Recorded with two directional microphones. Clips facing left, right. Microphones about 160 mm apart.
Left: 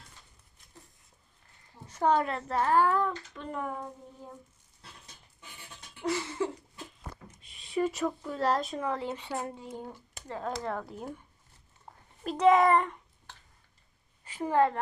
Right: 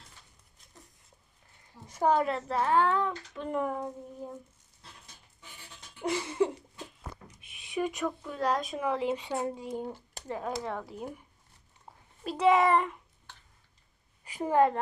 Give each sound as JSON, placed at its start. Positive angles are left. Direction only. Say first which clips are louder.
{"t": 1.9, "sound": "a woman's voice", "louder": "even", "side_deg": -5}
{"t": 3.3, "sound": "speech", "louder": "right 4 dB", "side_deg": -10}
{"t": 6.0, "sound": "speech", "louder": "right 3 dB", "side_deg": -15}
{"t": 7.9, "sound": "a woman's voice", "louder": "left 1 dB", "side_deg": 0}
{"t": 8.8, "sound": "speech", "louder": "right 3 dB", "side_deg": -15}
{"t": 10.7, "sound": "a woman's voice", "louder": "left 1 dB", "side_deg": 0}
{"t": 11.9, "sound": "a sound", "louder": "left 1 dB", "side_deg": -5}
{"t": 12.2, "sound": "a woman's voice", "louder": "left 2 dB", "side_deg": 0}
{"t": 14.3, "sound": "a woman's voice", "louder": "right 1 dB", "side_deg": -15}